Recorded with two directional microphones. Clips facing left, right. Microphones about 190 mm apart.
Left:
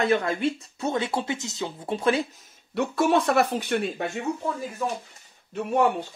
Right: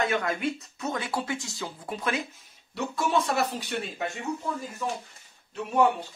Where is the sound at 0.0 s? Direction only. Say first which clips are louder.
Left 4 dB; 30° left (ahead or behind).